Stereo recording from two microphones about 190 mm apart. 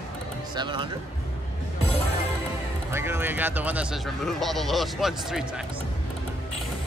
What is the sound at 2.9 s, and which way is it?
Speech, 10° right (ahead or behind).